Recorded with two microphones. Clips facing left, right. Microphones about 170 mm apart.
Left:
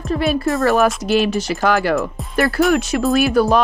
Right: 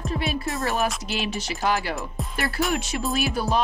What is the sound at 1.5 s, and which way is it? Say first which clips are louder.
Speech: left 8 dB; 65° left (ahead or behind).